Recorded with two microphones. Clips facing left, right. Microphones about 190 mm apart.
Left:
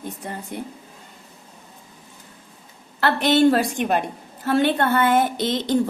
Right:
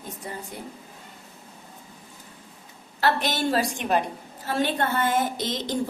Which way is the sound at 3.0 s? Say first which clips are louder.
Left 8 dB; 60° left (ahead or behind).